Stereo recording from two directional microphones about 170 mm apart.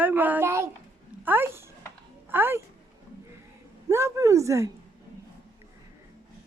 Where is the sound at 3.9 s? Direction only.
15° right (ahead or behind).